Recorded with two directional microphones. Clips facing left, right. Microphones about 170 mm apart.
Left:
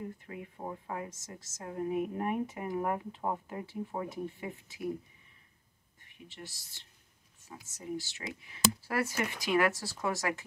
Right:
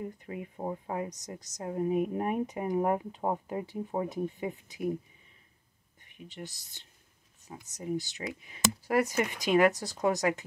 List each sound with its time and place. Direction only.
0.3 s a woman's voice: 25° right (ahead or behind)
6.2 s a woman's voice: 15° right (ahead or behind)